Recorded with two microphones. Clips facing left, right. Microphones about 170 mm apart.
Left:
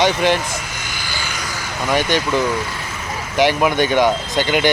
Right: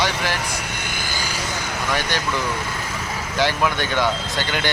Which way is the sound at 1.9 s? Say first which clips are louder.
Left 8 dB; 20° left (ahead or behind).